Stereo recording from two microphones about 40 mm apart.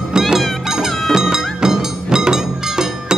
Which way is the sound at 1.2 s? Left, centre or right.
Centre.